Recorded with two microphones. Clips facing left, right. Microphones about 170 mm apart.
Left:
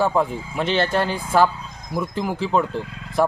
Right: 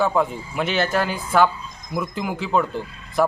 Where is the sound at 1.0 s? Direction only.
30° left (ahead or behind).